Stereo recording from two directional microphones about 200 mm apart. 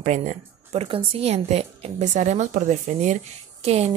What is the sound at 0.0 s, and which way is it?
Speech, 35° right (ahead or behind).